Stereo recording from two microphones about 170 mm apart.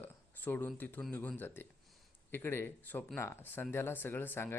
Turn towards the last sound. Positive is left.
turn(degrees=10)  # may be behind; listen again after turning